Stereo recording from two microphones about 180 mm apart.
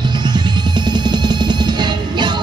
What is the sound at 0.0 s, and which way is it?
Music, 25° right (ahead or behind).